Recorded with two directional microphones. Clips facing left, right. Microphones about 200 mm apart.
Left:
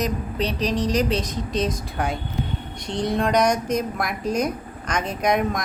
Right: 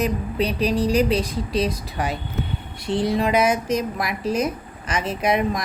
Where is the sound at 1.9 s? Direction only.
Centre (ahead or behind).